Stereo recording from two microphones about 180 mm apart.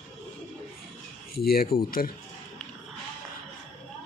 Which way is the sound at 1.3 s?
60° left (ahead or behind).